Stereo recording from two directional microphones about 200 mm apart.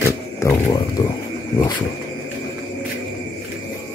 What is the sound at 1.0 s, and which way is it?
Wild animals, 20° left (ahead or behind).